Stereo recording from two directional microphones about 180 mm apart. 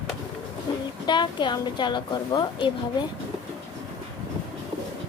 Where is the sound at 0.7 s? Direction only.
25° left (ahead or behind).